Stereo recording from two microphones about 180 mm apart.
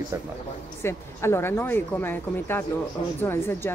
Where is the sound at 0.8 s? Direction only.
15° left (ahead or behind).